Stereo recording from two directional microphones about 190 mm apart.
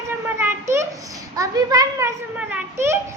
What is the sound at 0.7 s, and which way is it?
A child's voice, 15° right (ahead or behind).